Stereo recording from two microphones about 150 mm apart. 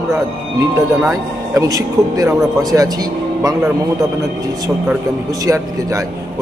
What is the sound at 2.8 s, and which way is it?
A man's voice, 25° right (ahead or behind).